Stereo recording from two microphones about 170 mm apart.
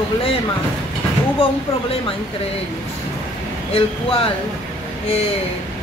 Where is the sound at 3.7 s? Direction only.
35° left (ahead or behind).